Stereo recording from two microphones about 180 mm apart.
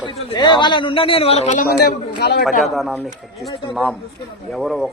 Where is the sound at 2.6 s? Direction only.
Centre (ahead or behind).